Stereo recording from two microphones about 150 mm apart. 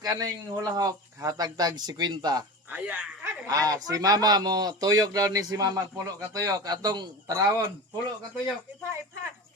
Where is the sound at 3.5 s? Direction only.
25° right (ahead or behind).